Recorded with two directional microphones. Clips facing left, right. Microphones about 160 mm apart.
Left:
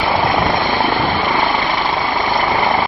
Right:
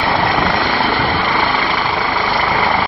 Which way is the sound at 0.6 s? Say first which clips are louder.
Even; 15° left (ahead or behind).